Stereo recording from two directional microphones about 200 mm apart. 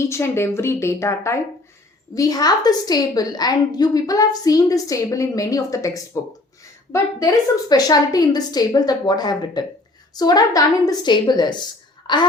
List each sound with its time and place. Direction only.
0.1 s a woman's voice: 15° left (ahead or behind)